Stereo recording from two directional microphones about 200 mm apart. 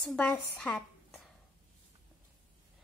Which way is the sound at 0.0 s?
5° left (ahead or behind).